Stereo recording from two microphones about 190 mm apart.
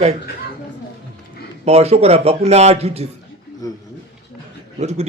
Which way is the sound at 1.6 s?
35° right (ahead or behind).